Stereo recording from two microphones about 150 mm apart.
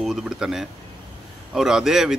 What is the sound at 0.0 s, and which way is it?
Speech, 5° right (ahead or behind).